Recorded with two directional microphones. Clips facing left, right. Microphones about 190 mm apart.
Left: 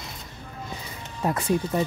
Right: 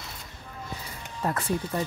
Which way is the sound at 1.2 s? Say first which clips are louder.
Left 4 dB; 15° left (ahead or behind).